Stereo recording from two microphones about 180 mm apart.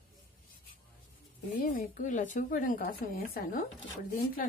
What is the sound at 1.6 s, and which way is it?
Speech, 50° left (ahead or behind).